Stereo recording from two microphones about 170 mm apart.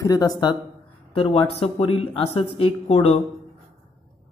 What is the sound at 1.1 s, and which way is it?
Speech, 30° left (ahead or behind).